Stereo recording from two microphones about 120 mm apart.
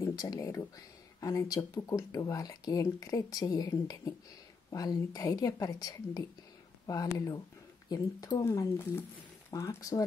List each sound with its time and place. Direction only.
0.0 s speech: 30° left (ahead or behind)